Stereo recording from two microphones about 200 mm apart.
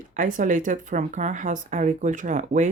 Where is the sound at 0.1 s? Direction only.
40° right (ahead or behind).